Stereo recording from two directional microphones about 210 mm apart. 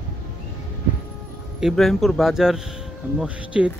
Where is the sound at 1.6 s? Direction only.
Centre (ahead or behind).